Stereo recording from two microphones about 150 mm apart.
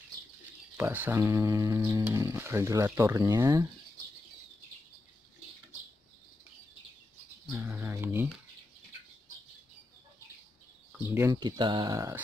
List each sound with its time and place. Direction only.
0.7 s speech: 10° right (ahead or behind)
7.5 s bird: 15° right (ahead or behind)
11.1 s speech: 15° right (ahead or behind)
11.3 s speech: 30° right (ahead or behind)